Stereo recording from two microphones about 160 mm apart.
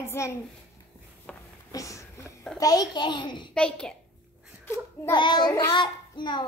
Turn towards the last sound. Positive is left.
turn(degrees=30)  # may be behind; listen again after turning